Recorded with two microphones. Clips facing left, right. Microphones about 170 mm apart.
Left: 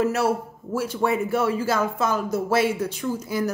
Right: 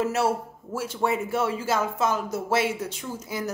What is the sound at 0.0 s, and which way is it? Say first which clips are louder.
Speech: left 2 dB; 25° right (ahead or behind).